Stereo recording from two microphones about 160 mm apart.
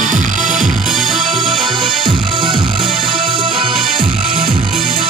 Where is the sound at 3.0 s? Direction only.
30° right (ahead or behind).